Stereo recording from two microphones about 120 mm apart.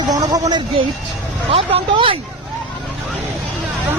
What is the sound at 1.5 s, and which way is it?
Speech, 50° right (ahead or behind).